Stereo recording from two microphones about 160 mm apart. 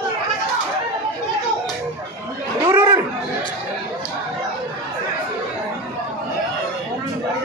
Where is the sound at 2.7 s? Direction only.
20° right (ahead or behind).